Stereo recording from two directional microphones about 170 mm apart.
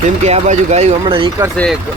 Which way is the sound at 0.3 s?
40° right (ahead or behind).